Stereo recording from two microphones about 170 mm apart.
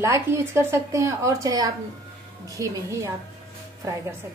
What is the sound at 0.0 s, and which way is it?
A woman's voice, 15° right (ahead or behind).